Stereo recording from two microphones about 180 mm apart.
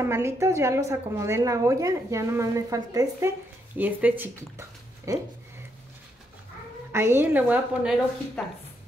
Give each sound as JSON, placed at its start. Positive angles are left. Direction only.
{"t": 0.0, "sound": "a woman's voice", "side_deg": -15}
{"t": 6.9, "sound": "a woman's voice", "side_deg": -15}
{"t": 8.4, "sound": "speech", "side_deg": 5}